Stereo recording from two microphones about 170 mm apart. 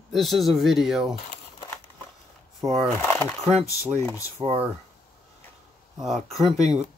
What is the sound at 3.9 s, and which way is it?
Speech, 15° left (ahead or behind).